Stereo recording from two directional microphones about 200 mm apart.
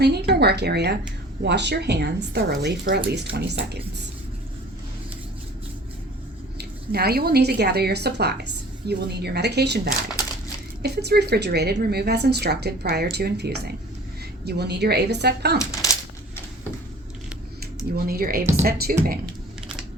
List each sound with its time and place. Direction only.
0.0 s speech: 55° right (ahead or behind)
6.6 s speech: 50° right (ahead or behind)
17.9 s speech: 50° right (ahead or behind)